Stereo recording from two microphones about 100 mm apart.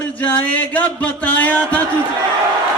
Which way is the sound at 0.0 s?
15° left (ahead or behind).